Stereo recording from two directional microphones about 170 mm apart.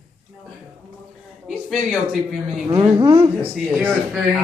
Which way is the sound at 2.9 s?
15° right (ahead or behind).